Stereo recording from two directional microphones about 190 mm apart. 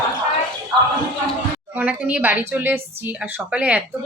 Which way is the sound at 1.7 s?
10° right (ahead or behind).